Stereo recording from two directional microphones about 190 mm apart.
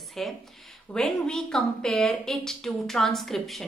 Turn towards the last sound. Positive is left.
turn(degrees=0)  # may be behind; listen again after turning